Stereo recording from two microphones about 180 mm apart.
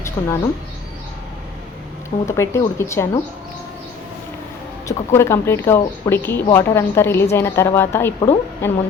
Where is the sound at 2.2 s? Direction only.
15° left (ahead or behind).